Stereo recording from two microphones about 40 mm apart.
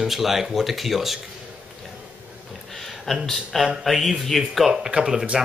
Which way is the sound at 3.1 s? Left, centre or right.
Centre.